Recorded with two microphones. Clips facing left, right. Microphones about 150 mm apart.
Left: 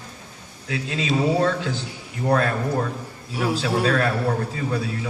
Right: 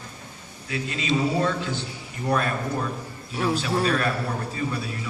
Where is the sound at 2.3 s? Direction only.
65° left (ahead or behind).